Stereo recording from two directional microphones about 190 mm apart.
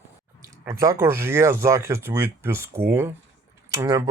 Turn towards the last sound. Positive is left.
turn(degrees=-15)  # may be behind; listen again after turning